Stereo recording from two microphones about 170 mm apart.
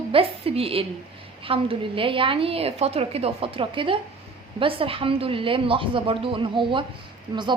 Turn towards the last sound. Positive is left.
turn(degrees=-25)  # may be behind; listen again after turning